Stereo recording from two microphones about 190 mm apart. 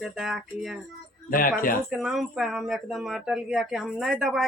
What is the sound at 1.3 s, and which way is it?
Speech, 45° left (ahead or behind).